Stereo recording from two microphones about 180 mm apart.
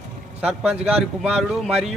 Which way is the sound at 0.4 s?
5° right (ahead or behind).